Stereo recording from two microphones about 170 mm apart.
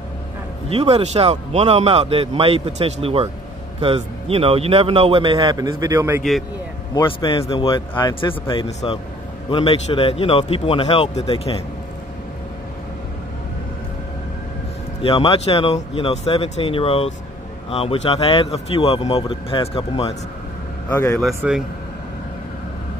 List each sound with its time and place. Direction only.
0.7 s speech: 35° right (ahead or behind); by 6.2 s 15° right (ahead or behind)
6.9 s a man's voice: 25° left (ahead or behind)
15.0 s a man's voice: 30° left (ahead or behind)
20.9 s speech: 15° left (ahead or behind)
21.4 s speech: 5° right (ahead or behind)